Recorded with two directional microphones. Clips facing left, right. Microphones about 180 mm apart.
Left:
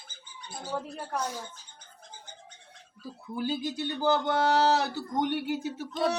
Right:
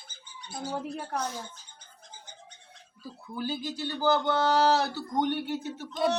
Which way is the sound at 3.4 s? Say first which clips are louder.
Left 2 dB; 25° left (ahead or behind).